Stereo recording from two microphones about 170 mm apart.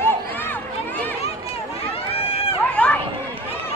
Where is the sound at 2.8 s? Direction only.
10° left (ahead or behind).